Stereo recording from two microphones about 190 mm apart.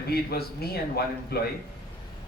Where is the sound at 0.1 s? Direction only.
55° left (ahead or behind).